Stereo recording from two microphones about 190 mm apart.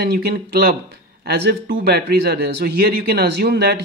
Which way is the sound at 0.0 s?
55° right (ahead or behind).